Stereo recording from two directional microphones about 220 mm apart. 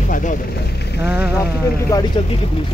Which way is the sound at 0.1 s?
35° left (ahead or behind).